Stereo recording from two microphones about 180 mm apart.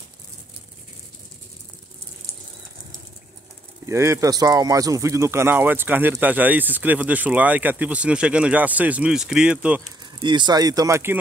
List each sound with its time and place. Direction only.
3.8 s speech: 15° right (ahead or behind)
10.2 s speech: 25° right (ahead or behind)